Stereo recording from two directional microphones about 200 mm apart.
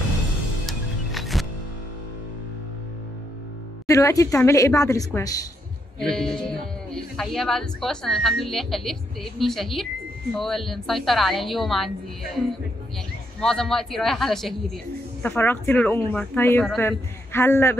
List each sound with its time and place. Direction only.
0.7 s music: centre (ahead or behind)
3.8 s speech: 15° left (ahead or behind)
5.9 s a woman's voice: centre (ahead or behind)
13.4 s a woman's voice: 5° left (ahead or behind)